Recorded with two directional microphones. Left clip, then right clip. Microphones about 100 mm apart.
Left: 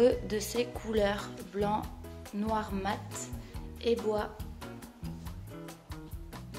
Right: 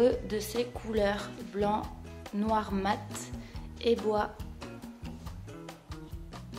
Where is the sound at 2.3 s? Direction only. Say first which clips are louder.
Right 3 dB; 30° right (ahead or behind).